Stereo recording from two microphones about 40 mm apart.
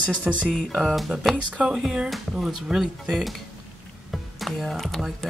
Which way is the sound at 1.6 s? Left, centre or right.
Right.